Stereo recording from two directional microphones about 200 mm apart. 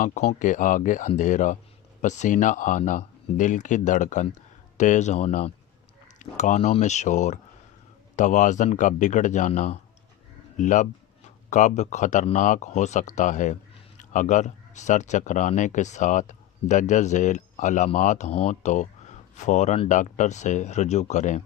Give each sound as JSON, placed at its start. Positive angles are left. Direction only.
{"t": 0.0, "sound": "speech", "side_deg": 35}